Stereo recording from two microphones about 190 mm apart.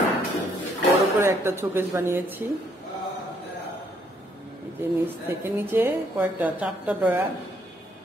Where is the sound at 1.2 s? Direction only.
15° right (ahead or behind).